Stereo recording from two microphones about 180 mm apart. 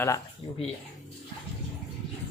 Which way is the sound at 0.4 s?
30° left (ahead or behind).